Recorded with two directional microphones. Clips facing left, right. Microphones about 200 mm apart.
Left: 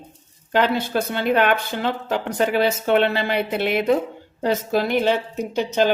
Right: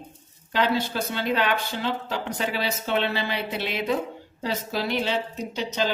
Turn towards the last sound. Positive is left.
turn(degrees=55)  # may be behind; listen again after turning